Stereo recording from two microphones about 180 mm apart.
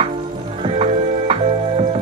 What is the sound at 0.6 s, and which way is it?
Music, 30° right (ahead or behind).